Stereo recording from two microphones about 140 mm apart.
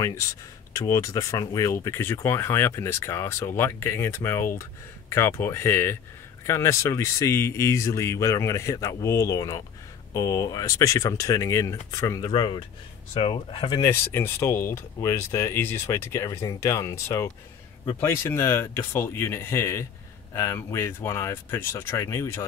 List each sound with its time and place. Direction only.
0.7 s speech: 20° left (ahead or behind)
12.3 s speech: 35° left (ahead or behind)
13.8 s speech: 15° left (ahead or behind)